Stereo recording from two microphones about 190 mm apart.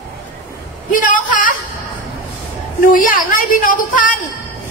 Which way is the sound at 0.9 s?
45° left (ahead or behind).